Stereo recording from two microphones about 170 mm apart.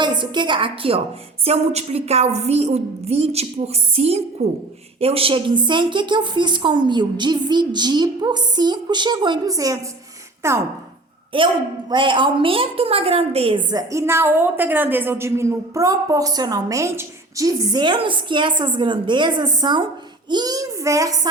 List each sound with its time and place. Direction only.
0.0 s a woman's voice: 25° right (ahead or behind)
11.3 s a woman's voice: 30° right (ahead or behind)